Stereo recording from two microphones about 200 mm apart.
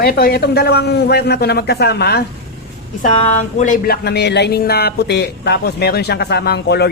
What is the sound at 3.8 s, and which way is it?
Speech, 50° left (ahead or behind).